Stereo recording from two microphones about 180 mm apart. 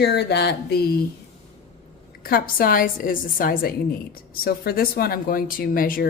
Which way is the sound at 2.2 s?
55° left (ahead or behind).